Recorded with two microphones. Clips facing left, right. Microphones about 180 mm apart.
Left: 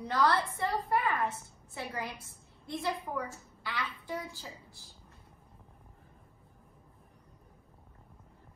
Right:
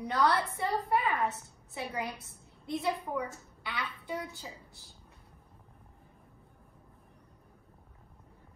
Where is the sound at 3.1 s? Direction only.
20° right (ahead or behind).